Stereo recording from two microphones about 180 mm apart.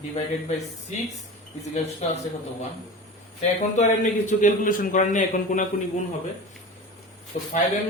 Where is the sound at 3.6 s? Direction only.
40° left (ahead or behind).